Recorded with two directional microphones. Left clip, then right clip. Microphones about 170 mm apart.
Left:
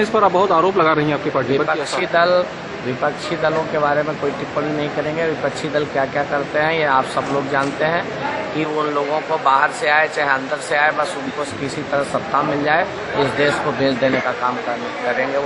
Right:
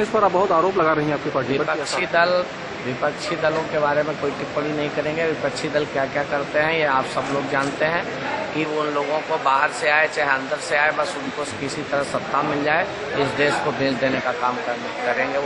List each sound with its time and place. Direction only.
0.1 s speech: 5° left (ahead or behind)
1.3 s speech: 5° left (ahead or behind)